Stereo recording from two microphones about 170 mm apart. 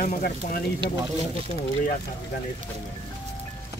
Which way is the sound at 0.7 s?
30° right (ahead or behind).